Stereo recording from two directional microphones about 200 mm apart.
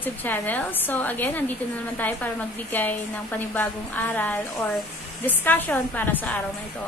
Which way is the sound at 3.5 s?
10° left (ahead or behind).